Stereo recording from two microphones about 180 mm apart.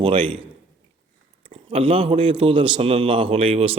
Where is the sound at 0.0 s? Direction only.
30° right (ahead or behind).